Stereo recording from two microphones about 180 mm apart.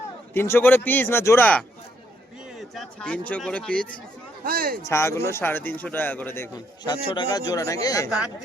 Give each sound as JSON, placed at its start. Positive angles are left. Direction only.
{"t": 0.3, "sound": "speech", "side_deg": 10}
{"t": 2.5, "sound": "speech", "side_deg": 0}
{"t": 4.4, "sound": "speech", "side_deg": -55}
{"t": 4.9, "sound": "speech", "side_deg": 15}